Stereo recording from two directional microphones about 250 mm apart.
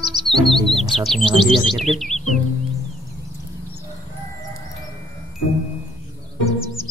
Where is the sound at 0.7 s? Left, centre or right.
Centre.